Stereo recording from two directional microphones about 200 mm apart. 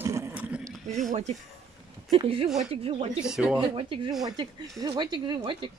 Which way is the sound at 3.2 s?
5° right (ahead or behind).